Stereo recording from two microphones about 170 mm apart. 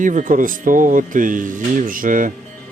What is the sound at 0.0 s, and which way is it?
Speech, 45° right (ahead or behind).